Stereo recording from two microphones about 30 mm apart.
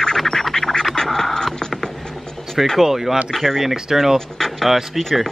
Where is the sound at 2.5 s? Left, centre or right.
Centre.